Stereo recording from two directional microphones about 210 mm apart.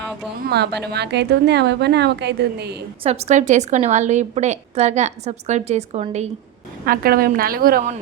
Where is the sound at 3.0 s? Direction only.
30° right (ahead or behind).